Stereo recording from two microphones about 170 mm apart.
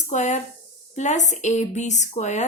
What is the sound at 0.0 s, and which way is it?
Speech, 45° left (ahead or behind).